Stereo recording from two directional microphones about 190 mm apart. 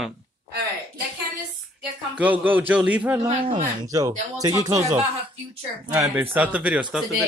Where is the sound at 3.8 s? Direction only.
20° right (ahead or behind).